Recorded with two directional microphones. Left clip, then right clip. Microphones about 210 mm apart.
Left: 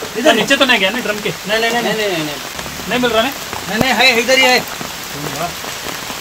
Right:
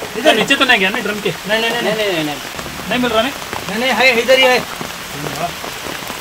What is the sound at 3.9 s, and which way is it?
Speech, 15° left (ahead or behind).